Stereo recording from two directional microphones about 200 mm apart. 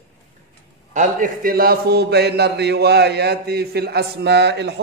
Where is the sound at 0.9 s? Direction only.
40° right (ahead or behind); by 4.7 s 60° right (ahead or behind).